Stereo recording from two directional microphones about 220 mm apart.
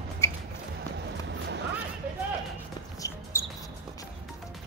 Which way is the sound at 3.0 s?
10° left (ahead or behind).